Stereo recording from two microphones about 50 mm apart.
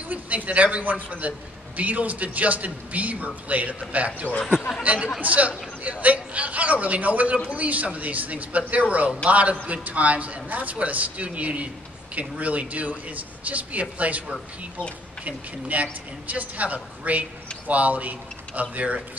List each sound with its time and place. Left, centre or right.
0.1 s a man's voice: right
15.2 s a man's voice: right